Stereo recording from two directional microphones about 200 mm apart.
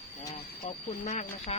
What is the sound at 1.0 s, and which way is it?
Speech, 35° left (ahead or behind).